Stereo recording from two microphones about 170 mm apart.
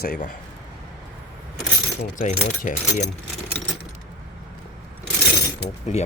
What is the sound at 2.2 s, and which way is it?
Speech, 45° left (ahead or behind).